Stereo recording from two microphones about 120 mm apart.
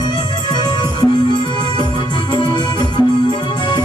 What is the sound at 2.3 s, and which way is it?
Organ, 40° left (ahead or behind).